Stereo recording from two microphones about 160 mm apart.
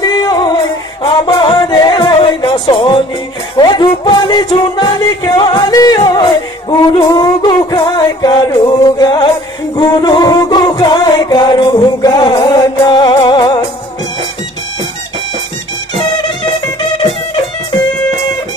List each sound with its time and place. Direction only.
0.0 s music: 25° left (ahead or behind)